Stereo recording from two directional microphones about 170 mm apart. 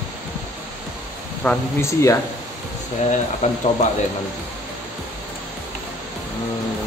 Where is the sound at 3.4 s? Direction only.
45° left (ahead or behind).